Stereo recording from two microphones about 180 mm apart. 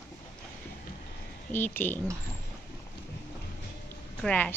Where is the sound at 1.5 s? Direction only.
10° left (ahead or behind).